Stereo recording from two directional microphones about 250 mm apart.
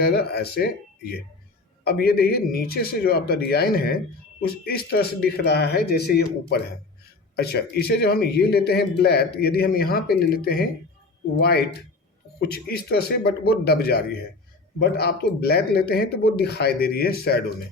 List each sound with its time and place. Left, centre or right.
0.0 s a man's voice: left